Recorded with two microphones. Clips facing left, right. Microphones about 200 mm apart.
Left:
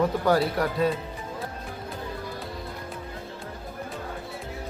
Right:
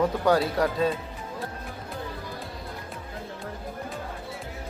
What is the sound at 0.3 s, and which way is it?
Speech, 20° right (ahead or behind).